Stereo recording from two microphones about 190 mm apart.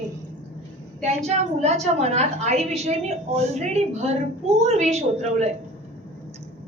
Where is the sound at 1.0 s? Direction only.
35° right (ahead or behind).